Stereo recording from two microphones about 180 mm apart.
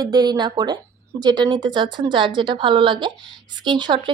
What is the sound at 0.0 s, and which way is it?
Speech, 20° right (ahead or behind).